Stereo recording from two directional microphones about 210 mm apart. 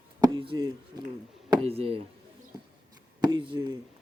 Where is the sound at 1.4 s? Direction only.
30° right (ahead or behind).